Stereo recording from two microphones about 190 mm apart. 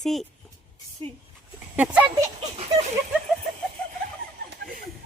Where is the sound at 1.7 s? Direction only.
10° right (ahead or behind).